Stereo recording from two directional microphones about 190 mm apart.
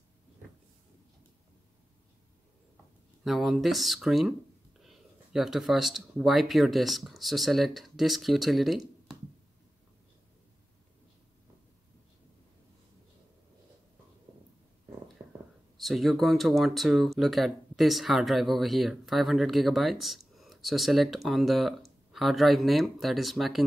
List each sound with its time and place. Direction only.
3.3 s speech: centre (ahead or behind)
15.2 s whispering: 15° right (ahead or behind)
15.8 s speech: centre (ahead or behind)